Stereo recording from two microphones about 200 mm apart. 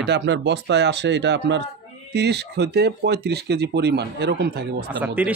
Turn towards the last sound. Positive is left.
turn(degrees=-10)  # may be behind; listen again after turning